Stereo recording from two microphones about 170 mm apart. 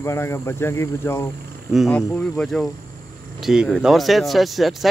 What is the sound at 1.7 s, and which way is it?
Speech, 5° left (ahead or behind).